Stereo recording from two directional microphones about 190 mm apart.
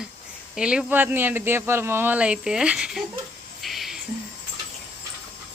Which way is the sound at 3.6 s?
Centre (ahead or behind).